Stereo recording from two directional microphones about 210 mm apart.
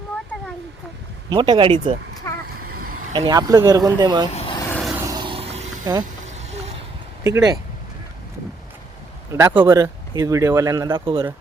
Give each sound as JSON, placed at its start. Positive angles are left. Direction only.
{"t": 1.3, "sound": "speech", "side_deg": -25}
{"t": 2.3, "sound": "vehicle", "side_deg": 15}
{"t": 3.1, "sound": "speech", "side_deg": -20}
{"t": 4.3, "sound": "vehicle", "side_deg": 30}
{"t": 4.5, "sound": "a sound", "side_deg": 15}
{"t": 4.8, "sound": "vehicle", "side_deg": 0}
{"t": 5.0, "sound": "vehicle", "side_deg": -20}
{"t": 5.8, "sound": "speech", "side_deg": -20}
{"t": 6.2, "sound": "vehicle", "side_deg": -35}
{"t": 7.3, "sound": "speech", "side_deg": -15}
{"t": 9.3, "sound": "speech", "side_deg": -15}